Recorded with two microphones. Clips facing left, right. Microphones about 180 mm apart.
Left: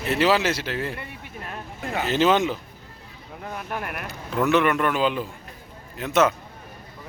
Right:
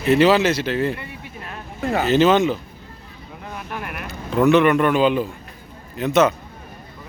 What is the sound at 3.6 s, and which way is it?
Speech, 40° left (ahead or behind).